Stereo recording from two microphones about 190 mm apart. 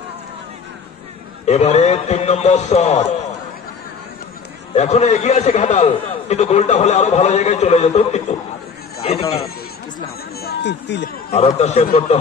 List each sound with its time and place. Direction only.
1.4 s a man's voice: 35° left (ahead or behind)
4.7 s a man's voice: 35° left (ahead or behind)
10.4 s speech: 65° left (ahead or behind)
11.3 s a man's voice: 35° left (ahead or behind)